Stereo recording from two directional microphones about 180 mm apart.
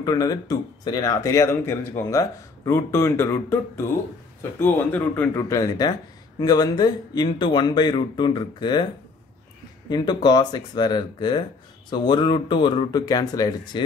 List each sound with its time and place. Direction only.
0.0 s speech: 20° left (ahead or behind)
9.8 s speech: 25° left (ahead or behind)